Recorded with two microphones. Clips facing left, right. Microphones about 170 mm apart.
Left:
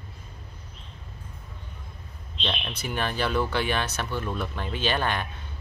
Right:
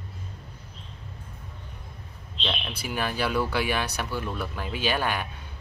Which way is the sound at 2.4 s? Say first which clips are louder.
Even; 5° right (ahead or behind).